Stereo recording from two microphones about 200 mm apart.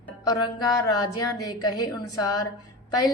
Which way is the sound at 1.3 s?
90° left.